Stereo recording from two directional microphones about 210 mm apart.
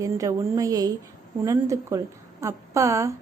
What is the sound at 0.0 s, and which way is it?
A woman's voice, 15° right (ahead or behind).